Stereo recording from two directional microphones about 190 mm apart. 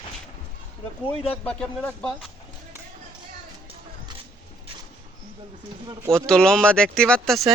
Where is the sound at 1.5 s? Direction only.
5° left (ahead or behind).